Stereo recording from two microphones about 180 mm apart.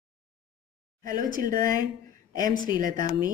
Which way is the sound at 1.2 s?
50° right (ahead or behind).